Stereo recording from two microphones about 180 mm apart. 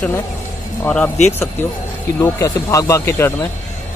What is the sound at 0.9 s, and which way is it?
Speech, 5° left (ahead or behind).